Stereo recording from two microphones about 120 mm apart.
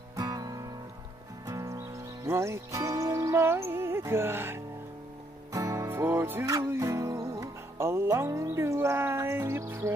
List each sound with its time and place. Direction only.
0.1 s music: 30° right (ahead or behind)
5.9 s music: 15° right (ahead or behind)